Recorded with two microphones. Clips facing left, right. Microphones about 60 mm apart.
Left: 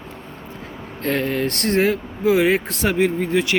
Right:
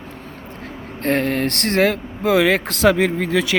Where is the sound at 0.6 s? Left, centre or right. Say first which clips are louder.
Right 3 dB; right.